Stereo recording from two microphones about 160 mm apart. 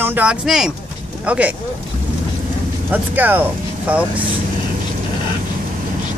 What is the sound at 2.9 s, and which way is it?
Speech, 10° right (ahead or behind).